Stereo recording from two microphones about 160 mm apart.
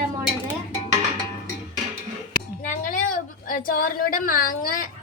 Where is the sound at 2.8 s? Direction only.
60° left (ahead or behind).